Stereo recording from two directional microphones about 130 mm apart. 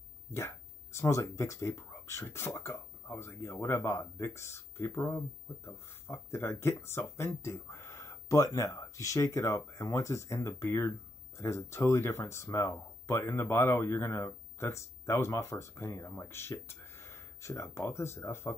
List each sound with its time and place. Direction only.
0.3 s speech: 20° left (ahead or behind)